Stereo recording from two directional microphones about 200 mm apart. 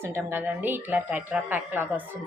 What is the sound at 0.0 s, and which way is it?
Speech, 10° right (ahead or behind).